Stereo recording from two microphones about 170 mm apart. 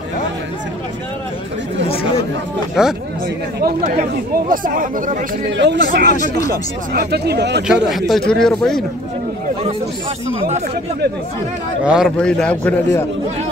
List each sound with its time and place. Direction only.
2.8 s speech: 5° right (ahead or behind)
3.8 s speech: 45° right (ahead or behind)
5.5 s speech: 90° right
5.9 s speech: 60° right (ahead or behind); by 7.6 s 80° right
7.6 s speech: 5° right (ahead or behind)
11.8 s speech: 5° right (ahead or behind)
12.2 s a man's voice: 5° left (ahead or behind)